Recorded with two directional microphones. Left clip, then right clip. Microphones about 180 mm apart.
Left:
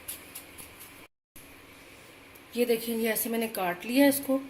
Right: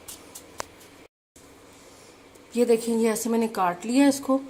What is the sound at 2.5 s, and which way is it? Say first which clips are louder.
Speech: right 6 dB; 50° right (ahead or behind).